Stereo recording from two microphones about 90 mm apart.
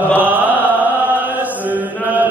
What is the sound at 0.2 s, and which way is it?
Chant, 20° right (ahead or behind).